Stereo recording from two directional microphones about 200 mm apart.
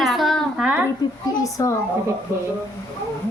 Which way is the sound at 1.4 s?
15° left (ahead or behind).